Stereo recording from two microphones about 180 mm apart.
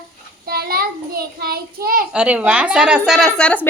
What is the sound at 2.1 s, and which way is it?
Speech, 5° right (ahead or behind).